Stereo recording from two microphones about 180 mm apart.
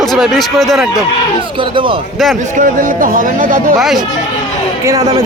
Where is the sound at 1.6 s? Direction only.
30° right (ahead or behind).